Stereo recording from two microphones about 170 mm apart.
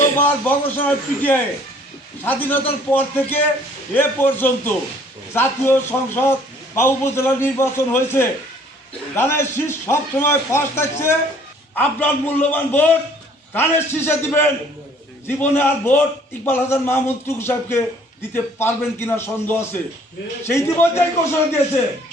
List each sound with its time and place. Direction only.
0.0 s a man's voice: 10° left (ahead or behind)